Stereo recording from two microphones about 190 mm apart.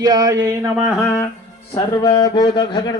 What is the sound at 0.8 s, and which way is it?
Speech, centre (ahead or behind).